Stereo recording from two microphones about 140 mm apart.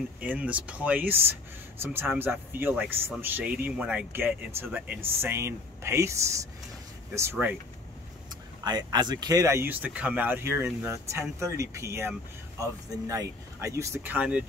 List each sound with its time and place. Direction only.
0.2 s speech: 10° right (ahead or behind)
8.6 s speech: 30° right (ahead or behind)
13.1 s speech: 25° right (ahead or behind)